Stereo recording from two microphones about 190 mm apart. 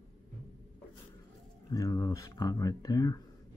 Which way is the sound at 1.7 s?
20° left (ahead or behind).